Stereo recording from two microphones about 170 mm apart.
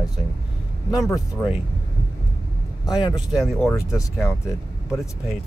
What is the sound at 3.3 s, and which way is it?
Speech, centre (ahead or behind).